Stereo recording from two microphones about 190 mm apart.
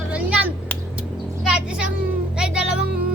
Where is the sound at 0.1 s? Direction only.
5° right (ahead or behind).